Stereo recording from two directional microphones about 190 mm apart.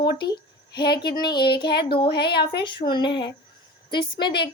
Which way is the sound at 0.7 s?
60° left (ahead or behind).